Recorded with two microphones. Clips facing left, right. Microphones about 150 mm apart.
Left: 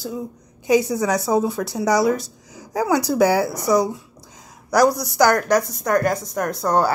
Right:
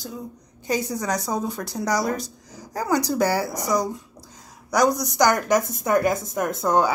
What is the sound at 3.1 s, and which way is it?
Speech, 10° left (ahead or behind).